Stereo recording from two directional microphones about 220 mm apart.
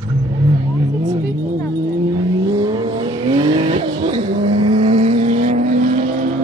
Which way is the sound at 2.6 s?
20° right (ahead or behind).